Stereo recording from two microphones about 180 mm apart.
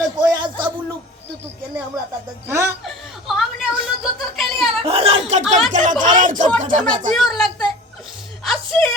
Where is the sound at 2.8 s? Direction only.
Centre (ahead or behind).